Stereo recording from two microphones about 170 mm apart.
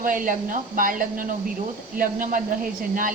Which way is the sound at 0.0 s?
55° right (ahead or behind).